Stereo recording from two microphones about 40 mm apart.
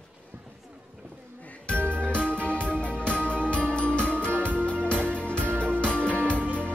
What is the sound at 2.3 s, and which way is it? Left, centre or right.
Music, left.